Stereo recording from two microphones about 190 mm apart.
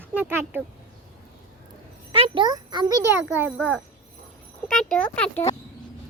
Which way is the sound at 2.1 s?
25° right (ahead or behind).